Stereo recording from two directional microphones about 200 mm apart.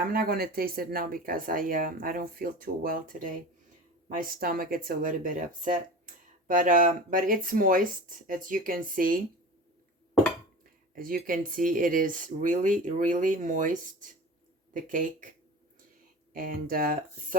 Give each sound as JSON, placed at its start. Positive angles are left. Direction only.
{"t": 0.1, "sound": "speech", "side_deg": -50}
{"t": 10.9, "sound": "speech", "side_deg": -45}
{"t": 16.3, "sound": "speech", "side_deg": -45}